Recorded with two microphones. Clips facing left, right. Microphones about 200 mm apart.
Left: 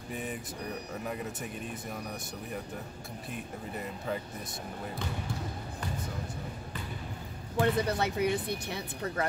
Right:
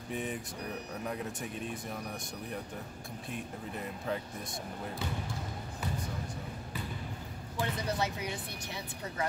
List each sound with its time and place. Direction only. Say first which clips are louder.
0.1 s speech: right 1 dB; centre (ahead or behind)
3.3 s speech: even; centre (ahead or behind)
7.5 s speech: left 7 dB; 60° left (ahead or behind)